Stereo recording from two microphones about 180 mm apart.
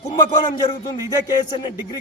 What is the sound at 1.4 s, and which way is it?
Speech, 25° left (ahead or behind).